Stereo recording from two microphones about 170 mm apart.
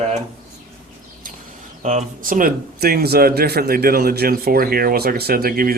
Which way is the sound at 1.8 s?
45° right (ahead or behind).